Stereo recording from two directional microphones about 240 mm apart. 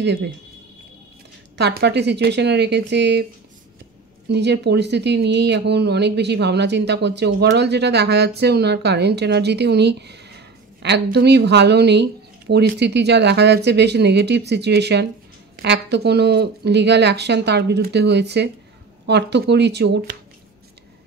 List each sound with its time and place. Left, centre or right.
0.0 s a woman's voice: right
1.6 s a woman's voice: right
4.3 s a woman's voice: right